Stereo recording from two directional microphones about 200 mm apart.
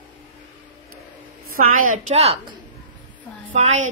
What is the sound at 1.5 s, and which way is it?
Speech, 90° right.